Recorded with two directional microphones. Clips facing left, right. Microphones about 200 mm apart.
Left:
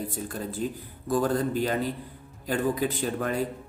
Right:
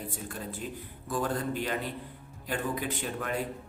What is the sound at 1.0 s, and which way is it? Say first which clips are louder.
Speech: left 6 dB; 40° left (ahead or behind).